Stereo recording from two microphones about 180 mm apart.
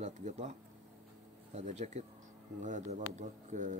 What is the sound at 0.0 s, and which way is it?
Speech, 40° right (ahead or behind).